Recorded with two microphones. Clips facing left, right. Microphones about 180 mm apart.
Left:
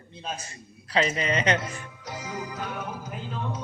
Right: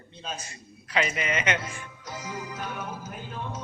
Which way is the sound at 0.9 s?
30° left (ahead or behind).